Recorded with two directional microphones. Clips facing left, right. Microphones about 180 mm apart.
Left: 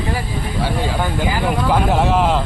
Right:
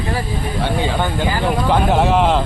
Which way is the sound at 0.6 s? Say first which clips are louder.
Right 1 dB; 5° left (ahead or behind).